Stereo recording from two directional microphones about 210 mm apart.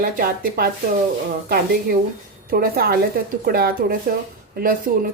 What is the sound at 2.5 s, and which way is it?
A woman's voice, 45° right (ahead or behind).